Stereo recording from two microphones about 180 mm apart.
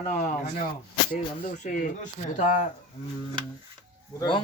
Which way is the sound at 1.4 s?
45° left (ahead or behind).